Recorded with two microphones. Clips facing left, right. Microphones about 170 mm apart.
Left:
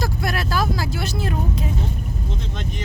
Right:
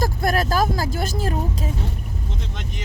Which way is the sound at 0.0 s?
45° right (ahead or behind).